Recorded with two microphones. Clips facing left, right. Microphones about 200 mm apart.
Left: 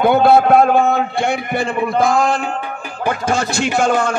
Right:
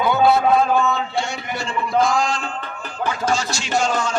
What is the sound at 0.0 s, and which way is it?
A man's voice, 55° left (ahead or behind).